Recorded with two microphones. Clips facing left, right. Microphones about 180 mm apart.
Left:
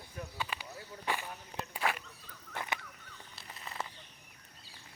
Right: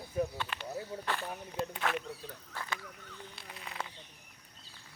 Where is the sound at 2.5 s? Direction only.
15° left (ahead or behind).